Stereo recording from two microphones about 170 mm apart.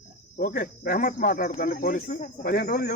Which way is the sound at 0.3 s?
60° left (ahead or behind).